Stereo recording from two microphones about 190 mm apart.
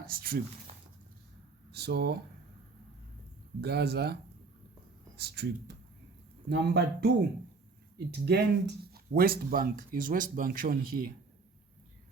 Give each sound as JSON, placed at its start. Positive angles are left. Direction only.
{"t": 0.0, "sound": "speech", "side_deg": -50}
{"t": 1.7, "sound": "speech", "side_deg": -60}
{"t": 3.6, "sound": "speech", "side_deg": -60}